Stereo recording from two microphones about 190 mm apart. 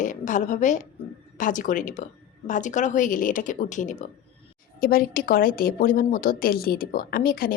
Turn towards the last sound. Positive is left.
turn(degrees=50)  # may be behind; listen again after turning